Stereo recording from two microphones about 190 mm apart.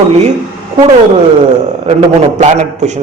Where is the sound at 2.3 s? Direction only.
40° right (ahead or behind).